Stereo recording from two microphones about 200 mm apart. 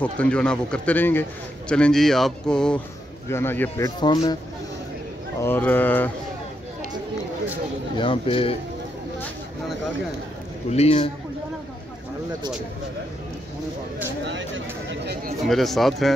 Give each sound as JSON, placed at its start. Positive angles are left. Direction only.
{"t": 0.0, "sound": "speech", "side_deg": 5}
{"t": 5.4, "sound": "speech", "side_deg": 10}
{"t": 8.0, "sound": "speech", "side_deg": 25}
{"t": 10.7, "sound": "a man's voice", "side_deg": 30}
{"t": 14.2, "sound": "a sound", "side_deg": -65}
{"t": 15.4, "sound": "speech", "side_deg": 0}